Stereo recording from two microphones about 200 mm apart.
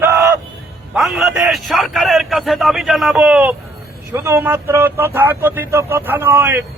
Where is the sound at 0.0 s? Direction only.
15° right (ahead or behind).